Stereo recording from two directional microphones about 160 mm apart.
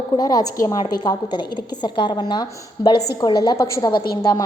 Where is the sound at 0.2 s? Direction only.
25° left (ahead or behind).